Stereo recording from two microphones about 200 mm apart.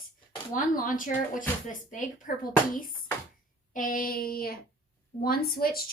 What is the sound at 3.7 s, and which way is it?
A woman's voice, 45° left (ahead or behind).